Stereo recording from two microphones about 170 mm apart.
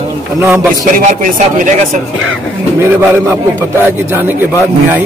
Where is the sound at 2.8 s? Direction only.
15° right (ahead or behind).